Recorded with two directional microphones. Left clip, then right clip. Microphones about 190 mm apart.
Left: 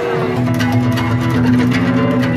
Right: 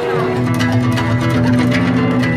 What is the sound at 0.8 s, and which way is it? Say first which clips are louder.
Music: even; 15° right (ahead or behind).